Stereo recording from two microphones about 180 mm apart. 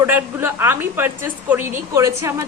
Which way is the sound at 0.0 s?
10° right (ahead or behind).